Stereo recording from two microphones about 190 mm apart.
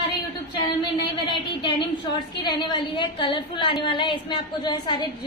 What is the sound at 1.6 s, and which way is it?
A woman's voice, 25° left (ahead or behind).